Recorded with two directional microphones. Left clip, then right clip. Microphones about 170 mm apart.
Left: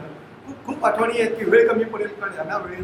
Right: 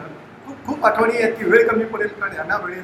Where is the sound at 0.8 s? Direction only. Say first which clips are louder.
Right 3 dB; 20° left (ahead or behind).